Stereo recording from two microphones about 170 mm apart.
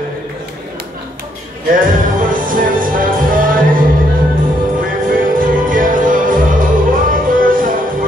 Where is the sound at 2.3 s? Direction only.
55° right (ahead or behind).